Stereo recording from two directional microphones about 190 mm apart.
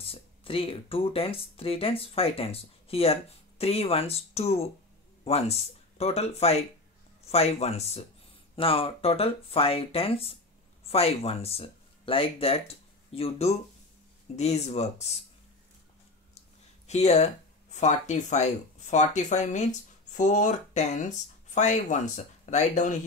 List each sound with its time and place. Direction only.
0.0 s speech: 30° left (ahead or behind)
16.8 s speech: 35° left (ahead or behind)